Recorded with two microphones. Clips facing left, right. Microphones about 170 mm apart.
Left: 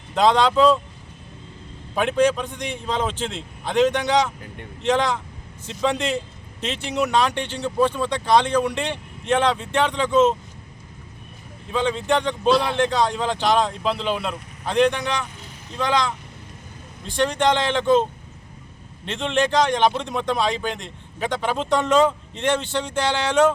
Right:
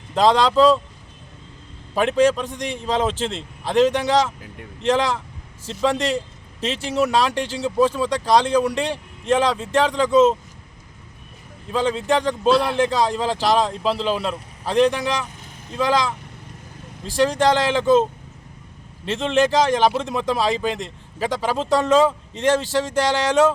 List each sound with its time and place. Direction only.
0.1 s a man's voice: centre (ahead or behind)
2.0 s a man's voice: centre (ahead or behind)
8.8 s a man's voice: 35° right (ahead or behind)
9.3 s a man's voice: centre (ahead or behind)
11.7 s a man's voice: centre (ahead or behind)